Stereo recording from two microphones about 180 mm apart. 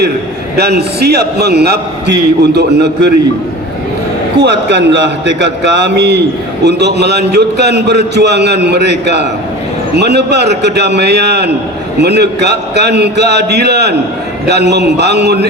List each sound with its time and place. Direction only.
0.5 s a man's voice: 65° right (ahead or behind)
4.4 s a man's voice: 75° right (ahead or behind)